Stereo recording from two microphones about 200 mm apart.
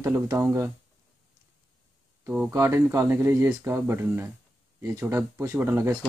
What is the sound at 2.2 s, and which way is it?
Speech, 10° right (ahead or behind).